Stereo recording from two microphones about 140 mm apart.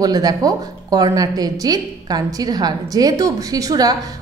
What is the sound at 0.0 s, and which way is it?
A woman's voice, 30° right (ahead or behind).